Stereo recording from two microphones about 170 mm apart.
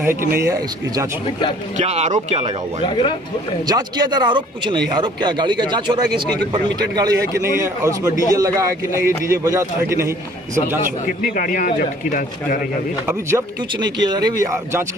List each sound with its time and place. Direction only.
0.3 s a man's voice: 20° right (ahead or behind)
1.8 s speech: 40° right (ahead or behind)
2.9 s speech: 30° left (ahead or behind)
3.6 s a man's voice: 25° right (ahead or behind)
11.3 s speech: 50° left (ahead or behind)
13.0 s a man's voice: 15° right (ahead or behind)
13.7 s speech: 25° right (ahead or behind)